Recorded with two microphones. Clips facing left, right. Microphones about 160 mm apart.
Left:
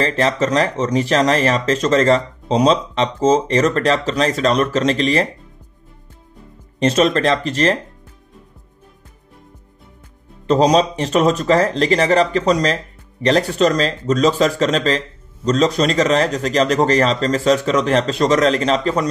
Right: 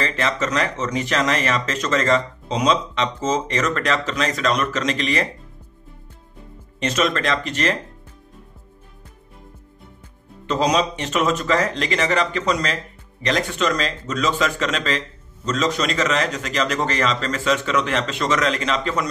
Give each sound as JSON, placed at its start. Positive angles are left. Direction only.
{"t": 0.0, "sound": "speech", "side_deg": 35}
{"t": 6.8, "sound": "speech", "side_deg": 30}
{"t": 10.4, "sound": "speech", "side_deg": 35}